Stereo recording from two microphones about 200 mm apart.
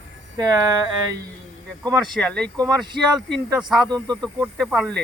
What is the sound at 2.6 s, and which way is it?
Speech, 20° right (ahead or behind).